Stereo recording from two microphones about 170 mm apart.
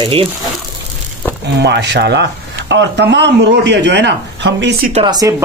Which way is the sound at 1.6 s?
80° right.